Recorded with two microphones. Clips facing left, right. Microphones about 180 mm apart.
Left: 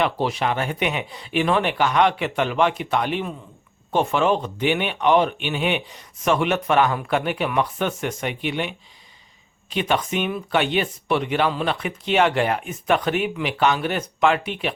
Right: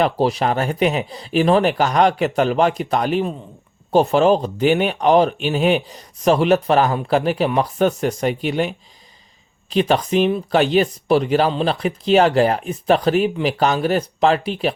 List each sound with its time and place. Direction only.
0.0 s speech: 35° right (ahead or behind)